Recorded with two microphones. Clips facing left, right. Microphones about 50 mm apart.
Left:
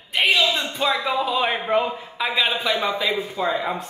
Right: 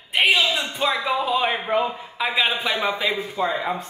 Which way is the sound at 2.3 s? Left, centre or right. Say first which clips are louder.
Left 1 dB; centre.